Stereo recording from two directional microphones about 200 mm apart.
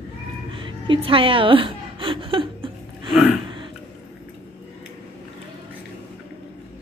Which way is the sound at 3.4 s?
25° right (ahead or behind).